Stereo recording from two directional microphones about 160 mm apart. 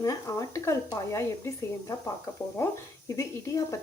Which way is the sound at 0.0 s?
20° left (ahead or behind).